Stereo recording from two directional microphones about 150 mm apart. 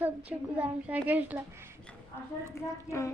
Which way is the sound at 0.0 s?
10° right (ahead or behind).